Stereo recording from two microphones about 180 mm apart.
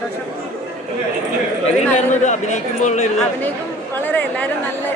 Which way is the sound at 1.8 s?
40° left (ahead or behind).